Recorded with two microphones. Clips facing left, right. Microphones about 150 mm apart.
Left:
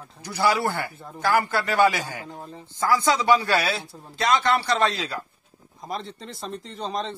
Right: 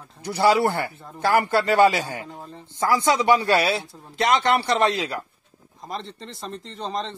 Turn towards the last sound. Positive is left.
turn(degrees=0)  # may be behind; listen again after turning